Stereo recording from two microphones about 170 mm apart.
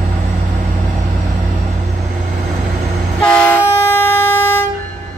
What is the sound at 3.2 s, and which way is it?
Vehicle, 10° left (ahead or behind).